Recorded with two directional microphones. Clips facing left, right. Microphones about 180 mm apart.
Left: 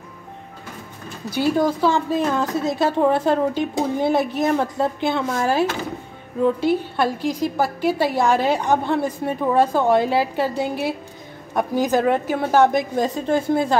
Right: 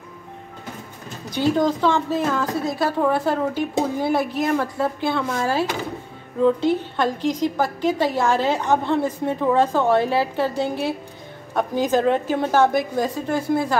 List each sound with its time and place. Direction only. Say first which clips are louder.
1.3 s a woman's voice: even; 10° left (ahead or behind)